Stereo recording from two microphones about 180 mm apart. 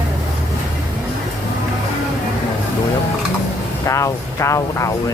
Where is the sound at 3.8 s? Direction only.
15° left (ahead or behind).